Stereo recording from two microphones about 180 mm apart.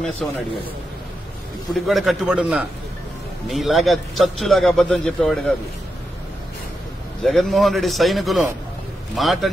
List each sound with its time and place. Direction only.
0.2 s a man's voice: centre (ahead or behind)
1.7 s a man's voice: centre (ahead or behind)
7.2 s a man's voice: centre (ahead or behind)